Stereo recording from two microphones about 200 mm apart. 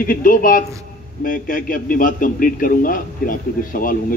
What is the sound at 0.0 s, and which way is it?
A man's voice, 45° left (ahead or behind).